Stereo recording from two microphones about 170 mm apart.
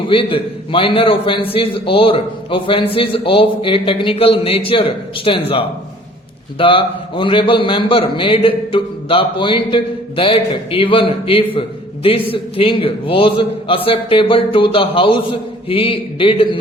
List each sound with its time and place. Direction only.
0.1 s a man's voice: 30° left (ahead or behind)